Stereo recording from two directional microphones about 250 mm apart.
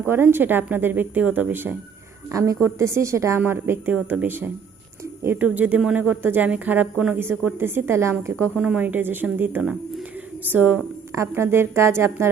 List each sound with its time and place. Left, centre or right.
0.1 s speech: centre